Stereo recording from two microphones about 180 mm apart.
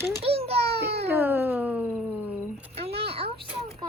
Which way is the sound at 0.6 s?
60° right (ahead or behind).